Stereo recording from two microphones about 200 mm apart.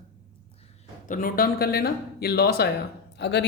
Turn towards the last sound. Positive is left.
turn(degrees=60)  # may be behind; listen again after turning